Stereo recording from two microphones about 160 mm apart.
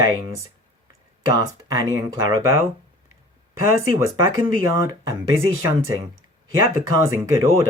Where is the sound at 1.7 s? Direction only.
20° right (ahead or behind).